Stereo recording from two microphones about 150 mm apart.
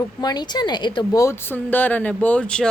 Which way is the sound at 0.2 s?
30° left (ahead or behind).